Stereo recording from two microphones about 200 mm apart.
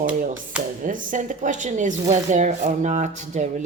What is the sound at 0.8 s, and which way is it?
A woman's voice, 40° right (ahead or behind).